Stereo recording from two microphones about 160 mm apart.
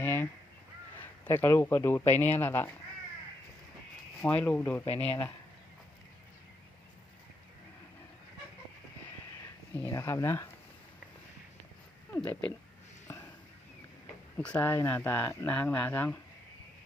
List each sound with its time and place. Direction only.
0.0 s honk: 15° left (ahead or behind)
0.9 s speech: 10° left (ahead or behind)
4.2 s speech: 10° left (ahead or behind)
9.7 s speech: 15° left (ahead or behind)
12.1 s speech: 10° left (ahead or behind)
14.3 s speech: 10° left (ahead or behind)